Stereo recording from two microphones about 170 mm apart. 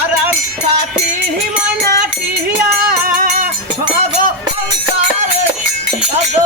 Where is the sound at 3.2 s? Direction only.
55° right (ahead or behind).